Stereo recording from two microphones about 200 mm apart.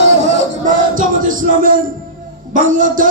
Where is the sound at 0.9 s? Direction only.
40° right (ahead or behind).